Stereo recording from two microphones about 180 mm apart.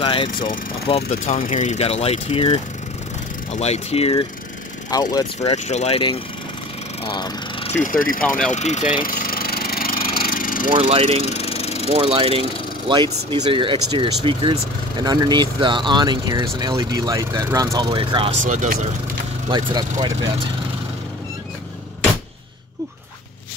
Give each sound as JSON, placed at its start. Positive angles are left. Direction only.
{"t": 0.0, "sound": "speech", "side_deg": 30}
{"t": 4.9, "sound": "speech", "side_deg": 20}
{"t": 5.4, "sound": "speech", "side_deg": 35}
{"t": 7.0, "sound": "vehicle", "side_deg": 25}
{"t": 7.8, "sound": "speech", "side_deg": 50}
{"t": 8.2, "sound": "speech", "side_deg": 5}
{"t": 8.5, "sound": "speech", "side_deg": 40}
{"t": 9.0, "sound": "engine", "side_deg": 55}
{"t": 10.7, "sound": "speech", "side_deg": -30}
{"t": 11.2, "sound": "a sound", "side_deg": 35}
{"t": 11.9, "sound": "speech", "side_deg": -30}
{"t": 18.4, "sound": "speech", "side_deg": -45}
{"t": 19.5, "sound": "speech", "side_deg": -25}